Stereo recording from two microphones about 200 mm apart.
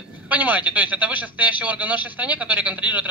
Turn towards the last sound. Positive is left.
turn(degrees=-10)  # may be behind; listen again after turning